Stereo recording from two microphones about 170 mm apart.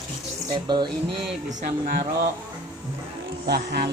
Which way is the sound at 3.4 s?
70° right (ahead or behind).